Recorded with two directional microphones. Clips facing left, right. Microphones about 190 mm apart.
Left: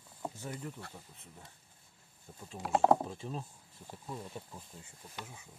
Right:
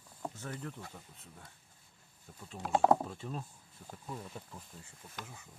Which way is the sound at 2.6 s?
Centre (ahead or behind).